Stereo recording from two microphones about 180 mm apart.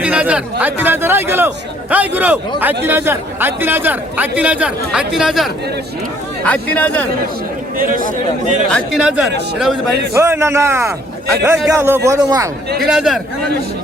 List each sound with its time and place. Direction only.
0.0 s speech: 5° right (ahead or behind)
7.8 s a man's voice: 50° right (ahead or behind)
8.7 s speech: centre (ahead or behind)
10.2 s speech: 15° right (ahead or behind)
12.8 s speech: centre (ahead or behind)